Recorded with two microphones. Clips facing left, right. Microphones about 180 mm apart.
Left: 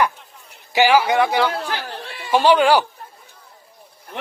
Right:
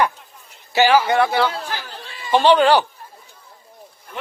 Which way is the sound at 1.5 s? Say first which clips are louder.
Left 3 dB; 60° left (ahead or behind).